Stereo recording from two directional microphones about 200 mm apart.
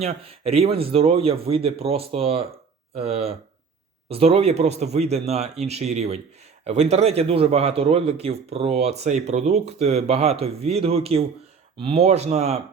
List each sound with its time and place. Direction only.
0.0 s a man's voice: 30° right (ahead or behind)